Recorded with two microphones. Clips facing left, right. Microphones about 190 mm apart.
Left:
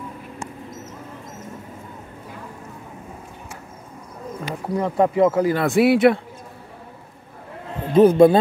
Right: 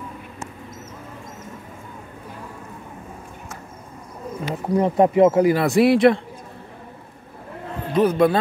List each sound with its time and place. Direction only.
4.6 s speech: 15° right (ahead or behind)
5.6 s speech: centre (ahead or behind)
7.9 s a man's voice: 25° left (ahead or behind)